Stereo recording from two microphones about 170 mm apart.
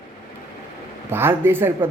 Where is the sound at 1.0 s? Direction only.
15° right (ahead or behind).